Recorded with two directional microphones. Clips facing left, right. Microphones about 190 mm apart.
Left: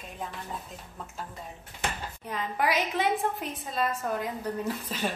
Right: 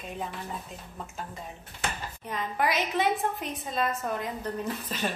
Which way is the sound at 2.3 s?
10° left (ahead or behind).